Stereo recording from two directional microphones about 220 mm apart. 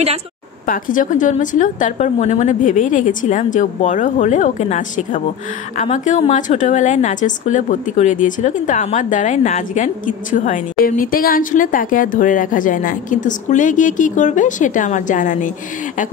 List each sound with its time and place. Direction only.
0.7 s a woman's voice: 35° left (ahead or behind)